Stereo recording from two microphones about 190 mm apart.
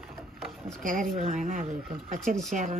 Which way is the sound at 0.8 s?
45° right (ahead or behind).